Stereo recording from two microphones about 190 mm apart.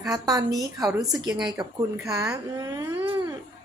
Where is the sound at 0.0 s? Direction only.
20° right (ahead or behind).